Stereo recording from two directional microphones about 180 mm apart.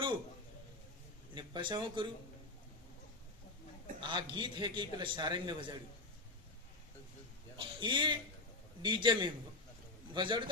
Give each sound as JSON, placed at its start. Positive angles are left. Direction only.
{"t": 1.3, "sound": "speech", "side_deg": -25}
{"t": 4.0, "sound": "a man's voice", "side_deg": -25}
{"t": 7.5, "sound": "a man's voice", "side_deg": -25}